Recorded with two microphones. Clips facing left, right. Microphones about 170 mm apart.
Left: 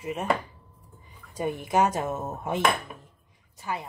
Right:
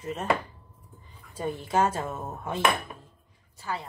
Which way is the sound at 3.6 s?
15° left (ahead or behind).